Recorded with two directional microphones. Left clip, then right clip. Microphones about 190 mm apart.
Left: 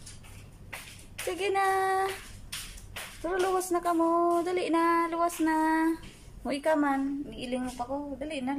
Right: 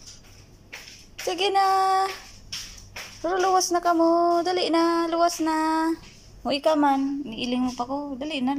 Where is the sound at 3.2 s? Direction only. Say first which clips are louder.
Right 7 dB; centre (ahead or behind).